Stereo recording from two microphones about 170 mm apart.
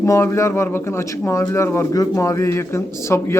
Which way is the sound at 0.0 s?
15° left (ahead or behind).